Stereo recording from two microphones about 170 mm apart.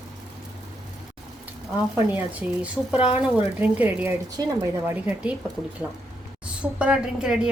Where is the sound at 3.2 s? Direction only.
10° right (ahead or behind).